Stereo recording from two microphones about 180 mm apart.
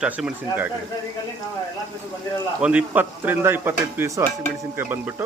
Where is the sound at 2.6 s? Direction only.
5° right (ahead or behind).